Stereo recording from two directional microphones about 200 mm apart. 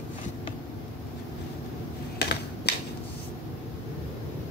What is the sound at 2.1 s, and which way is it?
Typing, 55° left (ahead or behind).